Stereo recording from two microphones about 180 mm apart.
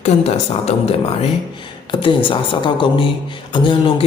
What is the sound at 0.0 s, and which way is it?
A man's voice, 35° left (ahead or behind).